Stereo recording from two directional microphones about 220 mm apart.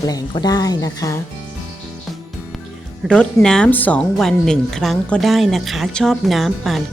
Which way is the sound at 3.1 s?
5° left (ahead or behind).